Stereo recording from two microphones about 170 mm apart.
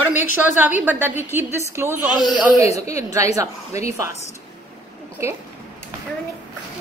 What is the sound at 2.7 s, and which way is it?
Speech, 40° left (ahead or behind).